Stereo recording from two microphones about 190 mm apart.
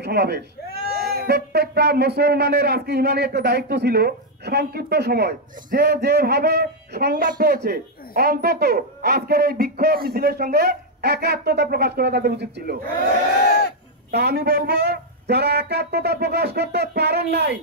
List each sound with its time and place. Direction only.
0.0 s speech: 60° right (ahead or behind)
14.1 s speech: 60° right (ahead or behind)